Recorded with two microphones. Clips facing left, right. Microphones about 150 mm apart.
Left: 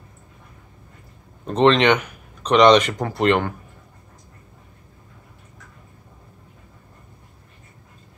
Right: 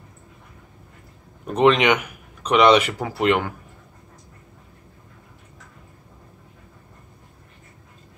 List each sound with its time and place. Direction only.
1.5 s speech: 10° right (ahead or behind)